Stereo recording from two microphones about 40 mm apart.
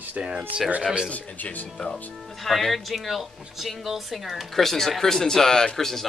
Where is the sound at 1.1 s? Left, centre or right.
Left.